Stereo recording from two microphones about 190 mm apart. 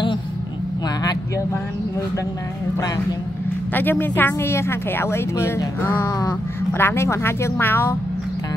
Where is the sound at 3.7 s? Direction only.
10° left (ahead or behind).